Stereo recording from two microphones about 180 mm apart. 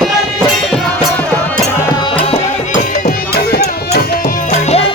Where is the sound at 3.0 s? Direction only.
60° left (ahead or behind).